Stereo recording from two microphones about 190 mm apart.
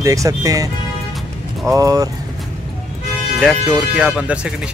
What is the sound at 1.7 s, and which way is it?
Speech, 15° right (ahead or behind).